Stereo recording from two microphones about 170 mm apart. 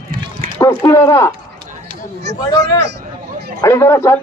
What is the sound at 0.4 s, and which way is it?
Run, 55° right (ahead or behind).